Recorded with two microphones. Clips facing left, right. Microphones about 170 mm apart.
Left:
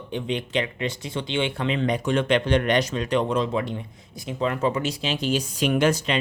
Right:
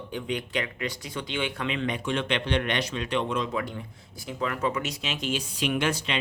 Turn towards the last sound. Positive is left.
turn(degrees=40)  # may be behind; listen again after turning